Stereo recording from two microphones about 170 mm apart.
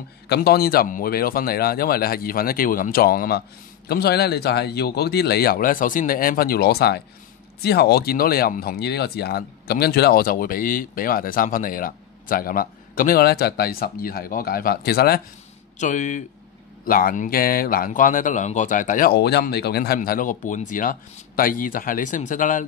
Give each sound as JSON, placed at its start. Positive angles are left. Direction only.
{"t": 0.3, "sound": "speech", "side_deg": 65}
{"t": 15.8, "sound": "speech", "side_deg": 45}